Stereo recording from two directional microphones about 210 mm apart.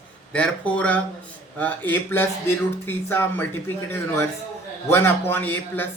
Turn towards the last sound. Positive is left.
turn(degrees=10)  # may be behind; listen again after turning